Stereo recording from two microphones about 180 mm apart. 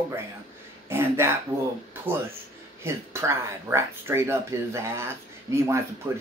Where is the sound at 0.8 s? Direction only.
15° right (ahead or behind).